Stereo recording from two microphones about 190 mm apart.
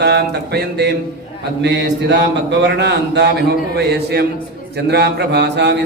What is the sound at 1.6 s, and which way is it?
Speech, 70° right (ahead or behind).